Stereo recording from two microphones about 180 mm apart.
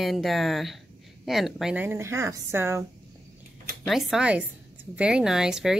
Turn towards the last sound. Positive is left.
turn(degrees=-5)  # may be behind; listen again after turning